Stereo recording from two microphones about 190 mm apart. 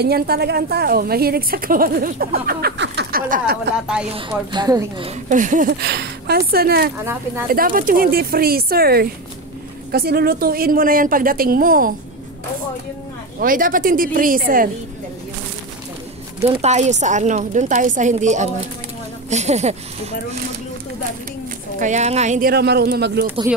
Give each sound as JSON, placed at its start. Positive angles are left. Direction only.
{"t": 0.0, "sound": "a woman's voice", "side_deg": -55}
{"t": 3.7, "sound": "a woman's voice", "side_deg": -5}
{"t": 4.1, "sound": "a woman's voice", "side_deg": -25}
{"t": 5.3, "sound": "a woman's voice", "side_deg": -40}
{"t": 5.8, "sound": "a woman's voice", "side_deg": -60}
{"t": 13.4, "sound": "a woman's voice", "side_deg": -45}
{"t": 16.4, "sound": "a woman's voice", "side_deg": -35}
{"t": 21.7, "sound": "a woman's voice", "side_deg": -40}
{"t": 22.5, "sound": "speech", "side_deg": -60}